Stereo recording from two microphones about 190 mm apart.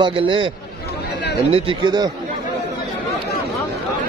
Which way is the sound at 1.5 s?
25° right (ahead or behind).